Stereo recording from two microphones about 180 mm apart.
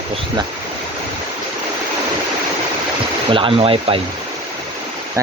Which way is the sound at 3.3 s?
30° right (ahead or behind).